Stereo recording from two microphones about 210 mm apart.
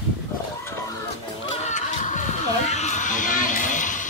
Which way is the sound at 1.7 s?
35° left (ahead or behind).